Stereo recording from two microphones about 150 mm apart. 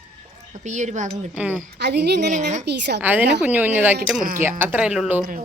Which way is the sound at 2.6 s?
90° right.